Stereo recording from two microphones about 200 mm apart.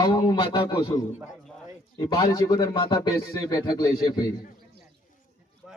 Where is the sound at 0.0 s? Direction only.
20° left (ahead or behind).